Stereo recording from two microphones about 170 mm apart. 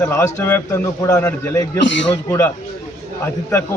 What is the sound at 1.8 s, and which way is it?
Speech, 90° left.